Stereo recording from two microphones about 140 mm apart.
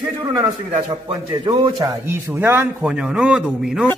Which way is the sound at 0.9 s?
30° right (ahead or behind).